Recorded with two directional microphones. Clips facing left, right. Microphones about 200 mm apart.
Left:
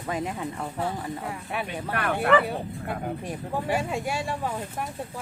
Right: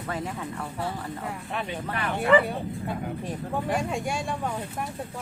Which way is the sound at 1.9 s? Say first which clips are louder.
Left 4 dB; 60° left (ahead or behind).